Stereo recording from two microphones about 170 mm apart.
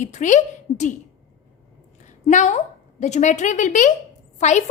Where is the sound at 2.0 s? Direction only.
45° left (ahead or behind).